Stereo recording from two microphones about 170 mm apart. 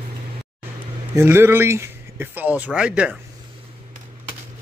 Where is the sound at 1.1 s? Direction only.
15° right (ahead or behind).